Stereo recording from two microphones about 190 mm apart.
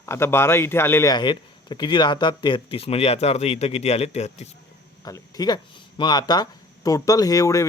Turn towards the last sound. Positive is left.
turn(degrees=15)  # may be behind; listen again after turning